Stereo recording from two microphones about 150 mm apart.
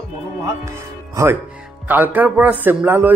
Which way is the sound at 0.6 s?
20° right (ahead or behind).